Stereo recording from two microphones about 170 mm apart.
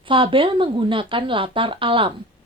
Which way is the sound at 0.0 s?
30° right (ahead or behind).